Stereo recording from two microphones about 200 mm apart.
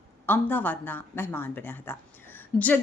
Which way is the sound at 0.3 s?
10° left (ahead or behind).